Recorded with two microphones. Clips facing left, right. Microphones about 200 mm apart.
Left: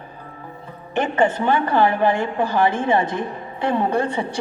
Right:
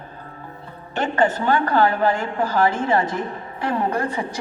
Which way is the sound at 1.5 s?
20° left (ahead or behind).